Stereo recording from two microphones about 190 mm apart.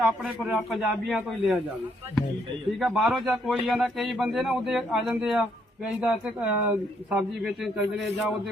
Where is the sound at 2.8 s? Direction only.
Centre (ahead or behind).